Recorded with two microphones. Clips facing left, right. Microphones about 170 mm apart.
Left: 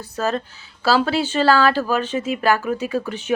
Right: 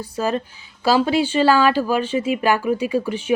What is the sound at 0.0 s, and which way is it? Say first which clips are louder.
Speech: right 1 dB; 10° right (ahead or behind).